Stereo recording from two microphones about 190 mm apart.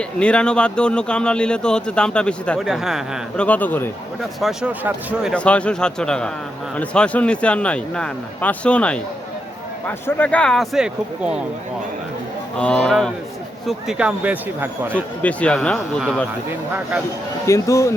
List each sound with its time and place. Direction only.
0.0 s speech: 5° left (ahead or behind)
5.3 s speech: 5° left (ahead or behind)
12.5 s speech: 5° left (ahead or behind)
15.2 s speech: 5° left (ahead or behind)
16.5 s speech: 10° right (ahead or behind)
17.4 s speech: 15° left (ahead or behind)